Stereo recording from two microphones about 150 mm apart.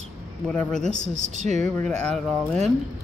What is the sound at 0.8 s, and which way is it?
Speech, 55° left (ahead or behind).